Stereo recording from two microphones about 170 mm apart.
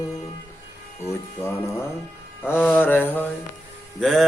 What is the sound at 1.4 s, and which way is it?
Music, 15° left (ahead or behind).